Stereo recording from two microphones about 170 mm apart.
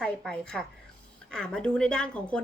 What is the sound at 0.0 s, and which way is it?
A woman's voice, 5° left (ahead or behind).